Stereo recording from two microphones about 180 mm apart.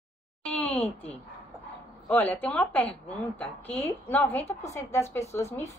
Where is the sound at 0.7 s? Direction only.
35° left (ahead or behind).